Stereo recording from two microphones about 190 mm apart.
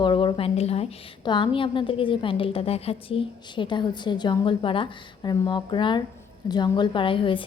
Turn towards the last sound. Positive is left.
turn(degrees=25)  # may be behind; listen again after turning